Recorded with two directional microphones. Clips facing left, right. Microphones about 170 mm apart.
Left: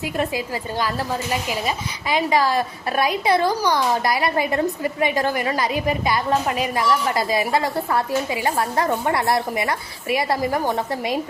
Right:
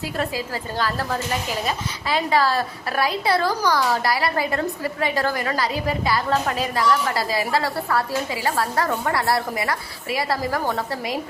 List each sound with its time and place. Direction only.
0.0 s a woman's voice: 15° left (ahead or behind)